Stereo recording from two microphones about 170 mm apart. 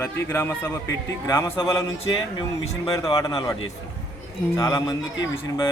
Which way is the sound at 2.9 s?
20° left (ahead or behind).